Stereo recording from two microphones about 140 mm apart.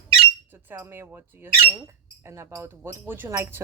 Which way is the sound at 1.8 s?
20° right (ahead or behind).